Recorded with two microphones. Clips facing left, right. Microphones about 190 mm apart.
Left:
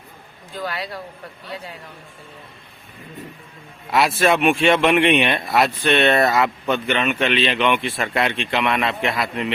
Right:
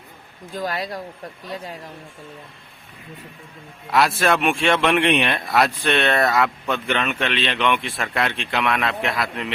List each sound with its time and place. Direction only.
0.5 s speech: 40° right (ahead or behind)
3.9 s speech: centre (ahead or behind)